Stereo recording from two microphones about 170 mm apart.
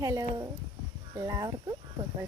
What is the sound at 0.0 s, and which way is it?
Speech, 20° right (ahead or behind).